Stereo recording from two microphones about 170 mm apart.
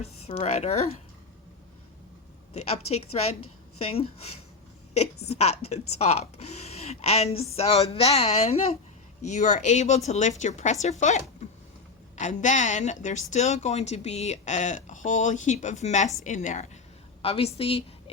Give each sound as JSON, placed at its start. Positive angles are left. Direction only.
{"t": 0.0, "sound": "speech", "side_deg": 35}
{"t": 2.5, "sound": "speech", "side_deg": 35}
{"t": 5.3, "sound": "speech", "side_deg": 40}
{"t": 17.2, "sound": "speech", "side_deg": 35}